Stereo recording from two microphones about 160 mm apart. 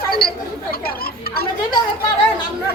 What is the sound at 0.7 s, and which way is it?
Speech, 70° left (ahead or behind).